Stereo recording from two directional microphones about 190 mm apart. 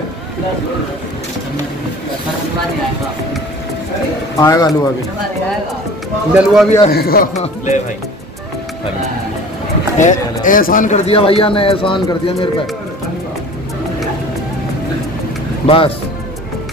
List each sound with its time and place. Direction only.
4.4 s speech: 20° left (ahead or behind)
6.3 s speech: centre (ahead or behind)
6.9 s a man's voice: 55° left (ahead or behind)
7.3 s speech: 35° left (ahead or behind)
9.9 s speech: 40° left (ahead or behind); by 12.4 s 25° left (ahead or behind)
15.6 s speech: 30° left (ahead or behind)